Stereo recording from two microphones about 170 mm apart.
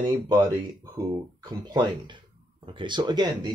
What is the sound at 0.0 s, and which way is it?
Speech, 25° right (ahead or behind).